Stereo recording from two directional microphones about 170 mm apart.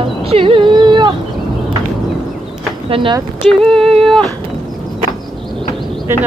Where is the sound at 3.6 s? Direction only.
Centre (ahead or behind).